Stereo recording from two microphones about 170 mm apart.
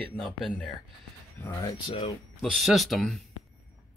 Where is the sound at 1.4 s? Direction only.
20° left (ahead or behind).